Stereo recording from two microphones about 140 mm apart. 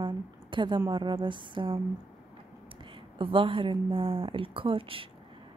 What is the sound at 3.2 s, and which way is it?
A woman's voice, 40° right (ahead or behind).